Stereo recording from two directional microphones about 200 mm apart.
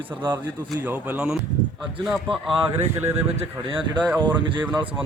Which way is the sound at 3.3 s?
30° right (ahead or behind).